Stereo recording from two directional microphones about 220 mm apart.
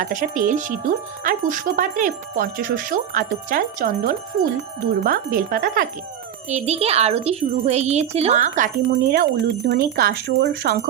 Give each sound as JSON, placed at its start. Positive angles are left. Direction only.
{"t": 0.0, "sound": "speech", "side_deg": -35}